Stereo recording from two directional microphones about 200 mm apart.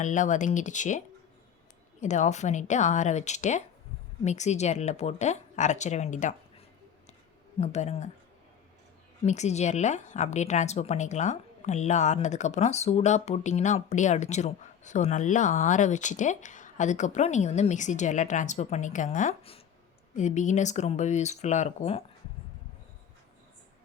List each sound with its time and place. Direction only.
0.0 s a woman's voice: 40° left (ahead or behind)
7.6 s a woman's voice: 35° left (ahead or behind)
9.2 s a woman's voice: 35° left (ahead or behind)